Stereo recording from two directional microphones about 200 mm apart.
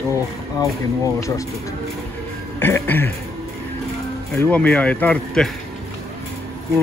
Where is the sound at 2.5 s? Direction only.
10° left (ahead or behind).